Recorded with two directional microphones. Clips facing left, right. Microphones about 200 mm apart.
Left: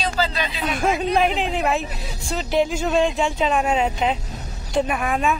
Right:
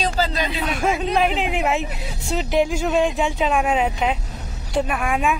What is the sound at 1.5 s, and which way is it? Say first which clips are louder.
A woman's voice: even; 20° right (ahead or behind).